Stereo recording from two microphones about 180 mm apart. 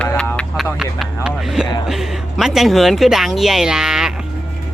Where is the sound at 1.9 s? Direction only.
Centre (ahead or behind).